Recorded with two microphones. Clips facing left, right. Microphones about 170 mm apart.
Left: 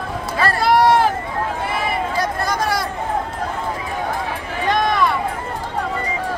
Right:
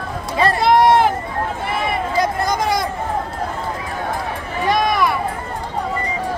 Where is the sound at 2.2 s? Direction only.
15° right (ahead or behind).